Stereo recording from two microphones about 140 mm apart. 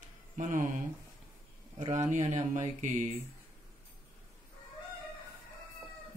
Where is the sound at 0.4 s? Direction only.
70° right (ahead or behind).